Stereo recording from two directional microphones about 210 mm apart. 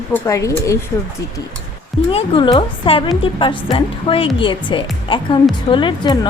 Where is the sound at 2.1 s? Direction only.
25° left (ahead or behind).